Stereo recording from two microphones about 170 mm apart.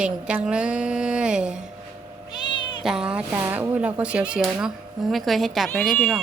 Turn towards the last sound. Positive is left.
turn(degrees=0)  # may be behind; listen again after turning